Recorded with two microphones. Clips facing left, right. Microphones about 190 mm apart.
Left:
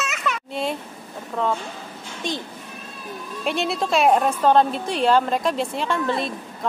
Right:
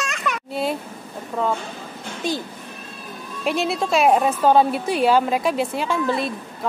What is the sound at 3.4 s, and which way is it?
A woman's voice, centre (ahead or behind).